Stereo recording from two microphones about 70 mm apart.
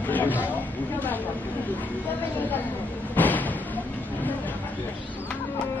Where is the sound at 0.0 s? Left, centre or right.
Left.